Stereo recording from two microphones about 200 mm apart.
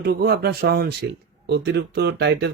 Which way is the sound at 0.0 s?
50° right (ahead or behind).